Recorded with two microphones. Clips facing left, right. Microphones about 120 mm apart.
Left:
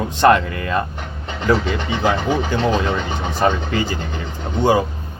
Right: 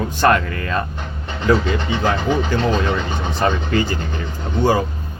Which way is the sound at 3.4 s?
5° left (ahead or behind).